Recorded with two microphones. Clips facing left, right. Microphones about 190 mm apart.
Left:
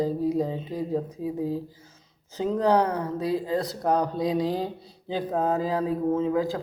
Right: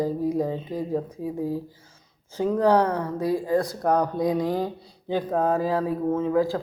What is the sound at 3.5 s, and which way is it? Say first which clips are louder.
Mantra: right 3 dB; 45° right (ahead or behind).